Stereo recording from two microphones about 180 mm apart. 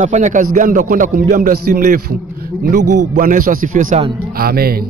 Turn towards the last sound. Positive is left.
turn(degrees=-55)  # may be behind; listen again after turning